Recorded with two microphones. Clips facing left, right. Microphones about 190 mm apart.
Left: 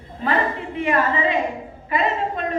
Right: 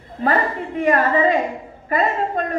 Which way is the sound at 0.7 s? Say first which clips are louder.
Right 4 dB; 45° right (ahead or behind).